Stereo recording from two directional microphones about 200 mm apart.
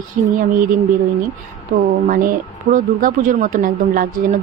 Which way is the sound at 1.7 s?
50° right (ahead or behind).